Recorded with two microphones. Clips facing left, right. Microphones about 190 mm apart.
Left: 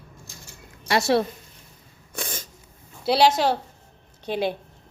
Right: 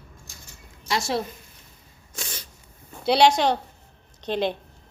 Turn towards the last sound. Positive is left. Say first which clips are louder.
# even
turn(degrees=10)  # may be behind; listen again after turning